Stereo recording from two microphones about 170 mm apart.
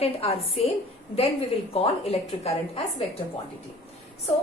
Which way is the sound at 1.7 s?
35° left (ahead or behind).